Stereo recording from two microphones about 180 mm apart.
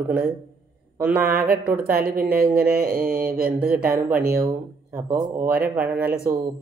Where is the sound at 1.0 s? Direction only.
10° right (ahead or behind).